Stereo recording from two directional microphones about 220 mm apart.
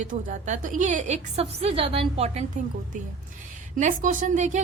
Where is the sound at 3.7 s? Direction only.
35° right (ahead or behind).